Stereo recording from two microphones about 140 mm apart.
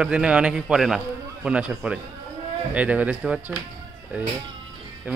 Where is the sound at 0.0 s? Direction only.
5° right (ahead or behind).